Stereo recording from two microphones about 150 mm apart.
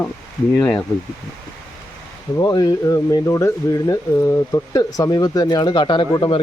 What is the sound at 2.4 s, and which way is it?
Speech, 25° left (ahead or behind).